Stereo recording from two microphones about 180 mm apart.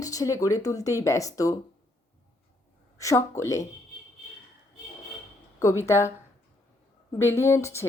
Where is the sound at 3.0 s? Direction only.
15° left (ahead or behind).